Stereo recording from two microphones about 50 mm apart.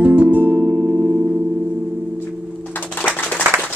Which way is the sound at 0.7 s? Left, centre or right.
Right.